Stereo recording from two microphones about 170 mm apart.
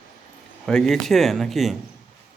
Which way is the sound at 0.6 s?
5° left (ahead or behind).